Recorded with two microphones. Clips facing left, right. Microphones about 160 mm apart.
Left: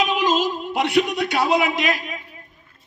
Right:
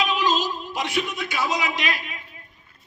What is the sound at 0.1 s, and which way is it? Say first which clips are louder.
A man's voice: left 3 dB; 50° left (ahead or behind).